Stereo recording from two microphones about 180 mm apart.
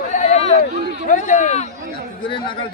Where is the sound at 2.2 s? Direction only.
25° left (ahead or behind).